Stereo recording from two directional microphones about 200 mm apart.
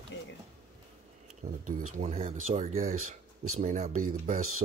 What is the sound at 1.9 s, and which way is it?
Speech, 35° right (ahead or behind).